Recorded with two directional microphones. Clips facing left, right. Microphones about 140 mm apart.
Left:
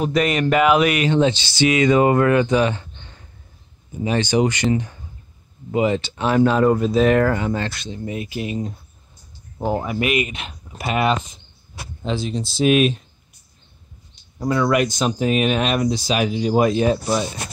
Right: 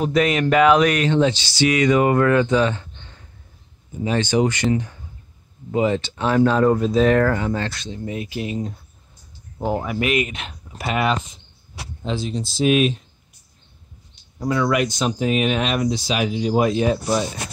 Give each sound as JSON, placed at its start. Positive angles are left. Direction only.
{"t": 0.0, "sound": "speech", "side_deg": 0}
{"t": 1.2, "sound": "speech", "side_deg": 25}
{"t": 4.0, "sound": "speech", "side_deg": 15}
{"t": 10.0, "sound": "speech", "side_deg": 5}
{"t": 10.9, "sound": "speech", "side_deg": 25}
{"t": 12.0, "sound": "speech", "side_deg": 75}
{"t": 14.4, "sound": "speech", "side_deg": 40}